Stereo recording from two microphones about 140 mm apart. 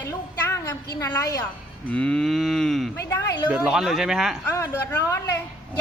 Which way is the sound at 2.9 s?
15° left (ahead or behind).